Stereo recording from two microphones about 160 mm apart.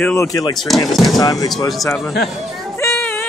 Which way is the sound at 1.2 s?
25° left (ahead or behind).